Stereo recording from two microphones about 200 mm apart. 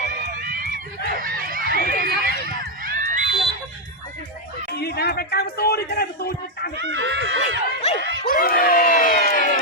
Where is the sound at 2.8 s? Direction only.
40° right (ahead or behind).